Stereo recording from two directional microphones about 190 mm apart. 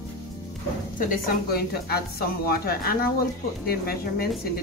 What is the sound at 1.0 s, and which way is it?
A woman's voice, 50° left (ahead or behind).